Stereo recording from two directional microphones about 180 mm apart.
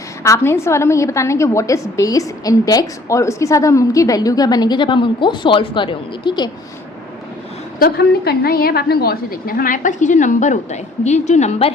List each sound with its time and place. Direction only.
0.2 s a woman's voice: 15° left (ahead or behind)
7.8 s a woman's voice: 60° left (ahead or behind); by 11.7 s 40° left (ahead or behind)